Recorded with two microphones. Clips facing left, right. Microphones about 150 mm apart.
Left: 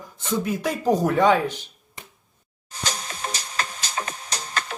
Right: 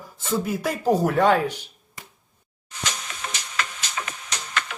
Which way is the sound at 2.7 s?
35° left (ahead or behind).